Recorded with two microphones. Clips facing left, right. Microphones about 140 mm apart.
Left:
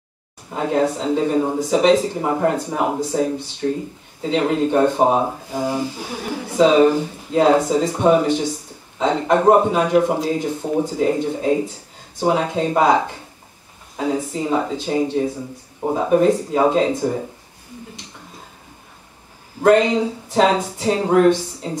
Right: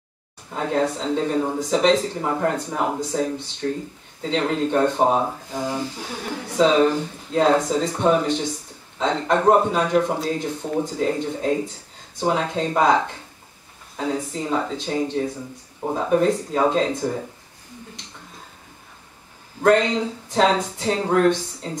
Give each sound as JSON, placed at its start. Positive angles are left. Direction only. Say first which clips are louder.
{"t": 0.5, "sound": "speech", "louder": "left 3 dB", "side_deg": 10}
{"t": 19.6, "sound": "speech", "louder": "left 3 dB", "side_deg": 10}